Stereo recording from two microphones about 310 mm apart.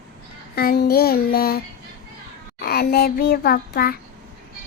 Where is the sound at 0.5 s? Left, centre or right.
Left.